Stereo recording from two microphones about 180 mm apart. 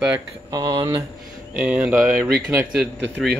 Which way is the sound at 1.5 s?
5° right (ahead or behind).